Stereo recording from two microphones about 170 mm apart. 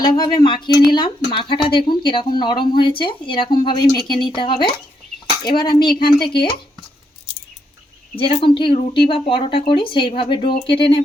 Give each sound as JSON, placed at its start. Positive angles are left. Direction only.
{"t": 0.0, "sound": "speech", "side_deg": 20}
{"t": 6.0, "sound": "speech", "side_deg": 65}
{"t": 8.1, "sound": "speech", "side_deg": 30}